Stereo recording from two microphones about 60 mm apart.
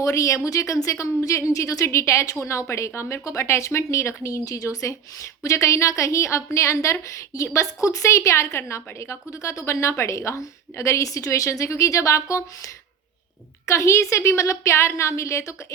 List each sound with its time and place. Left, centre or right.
0.0 s a woman's voice: left